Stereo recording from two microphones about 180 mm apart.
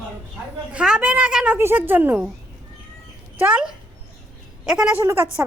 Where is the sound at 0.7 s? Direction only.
5° right (ahead or behind).